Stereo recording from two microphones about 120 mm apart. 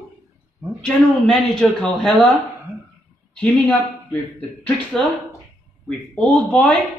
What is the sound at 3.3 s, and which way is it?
Speech, 10° left (ahead or behind).